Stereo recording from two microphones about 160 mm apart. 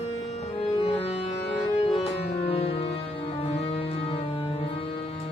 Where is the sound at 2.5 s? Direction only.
35° left (ahead or behind).